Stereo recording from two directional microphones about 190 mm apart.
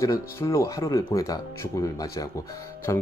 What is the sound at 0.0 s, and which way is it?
A man's voice, 15° left (ahead or behind).